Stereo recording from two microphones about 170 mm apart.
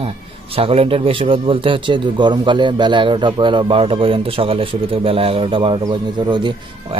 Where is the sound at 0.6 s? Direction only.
35° right (ahead or behind).